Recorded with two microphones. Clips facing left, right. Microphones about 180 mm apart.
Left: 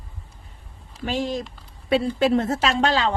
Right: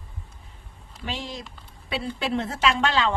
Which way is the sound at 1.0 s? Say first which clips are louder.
Left 8 dB; 50° left (ahead or behind).